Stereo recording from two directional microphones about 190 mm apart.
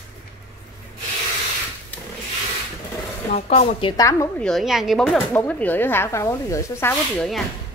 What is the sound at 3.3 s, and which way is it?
Speech, 35° left (ahead or behind).